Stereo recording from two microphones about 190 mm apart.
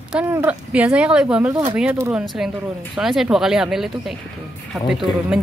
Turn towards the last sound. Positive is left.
turn(degrees=0)  # may be behind; listen again after turning